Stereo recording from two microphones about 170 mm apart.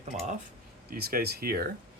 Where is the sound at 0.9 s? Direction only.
60° right (ahead or behind).